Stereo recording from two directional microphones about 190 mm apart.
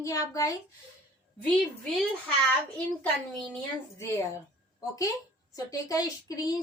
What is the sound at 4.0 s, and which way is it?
Speech, 15° left (ahead or behind).